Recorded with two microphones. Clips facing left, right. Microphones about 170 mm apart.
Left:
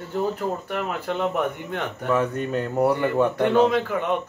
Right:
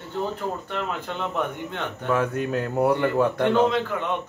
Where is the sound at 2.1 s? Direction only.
Centre (ahead or behind).